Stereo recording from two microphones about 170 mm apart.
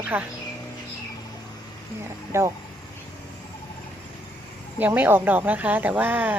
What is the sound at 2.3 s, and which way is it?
Speech, 15° right (ahead or behind).